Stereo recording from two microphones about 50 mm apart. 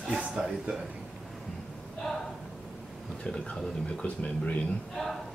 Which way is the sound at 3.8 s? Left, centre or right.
Left.